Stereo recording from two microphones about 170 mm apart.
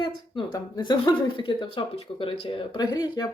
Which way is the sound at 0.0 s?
30° left (ahead or behind).